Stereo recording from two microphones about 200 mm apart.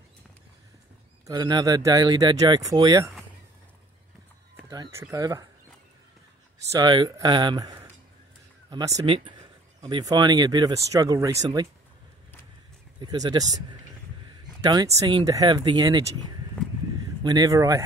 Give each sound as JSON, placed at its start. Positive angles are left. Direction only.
{"t": 1.2, "sound": "speech", "side_deg": -20}
{"t": 4.9, "sound": "speech", "side_deg": -15}
{"t": 6.7, "sound": "speech", "side_deg": -20}
{"t": 13.0, "sound": "speech", "side_deg": -20}
{"t": 16.6, "sound": "a sound", "side_deg": 5}
{"t": 17.2, "sound": "speech", "side_deg": -20}